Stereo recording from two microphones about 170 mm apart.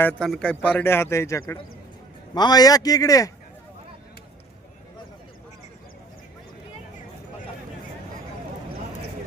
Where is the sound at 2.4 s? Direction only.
25° left (ahead or behind).